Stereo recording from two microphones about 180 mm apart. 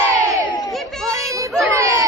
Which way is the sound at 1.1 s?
20° right (ahead or behind).